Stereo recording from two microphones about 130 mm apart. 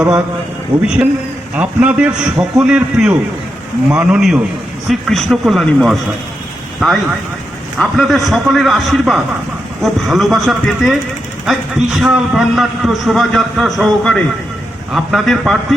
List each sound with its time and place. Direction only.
1.0 s a man's voice: 30° right (ahead or behind)
1.5 s a man's voice: 10° right (ahead or behind)